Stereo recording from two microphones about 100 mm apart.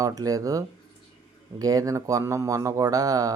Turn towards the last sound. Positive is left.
turn(degrees=-35)  # may be behind; listen again after turning